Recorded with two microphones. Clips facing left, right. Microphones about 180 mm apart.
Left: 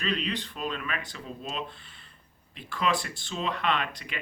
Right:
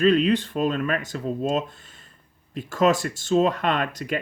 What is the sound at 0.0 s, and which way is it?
Speech, 45° right (ahead or behind).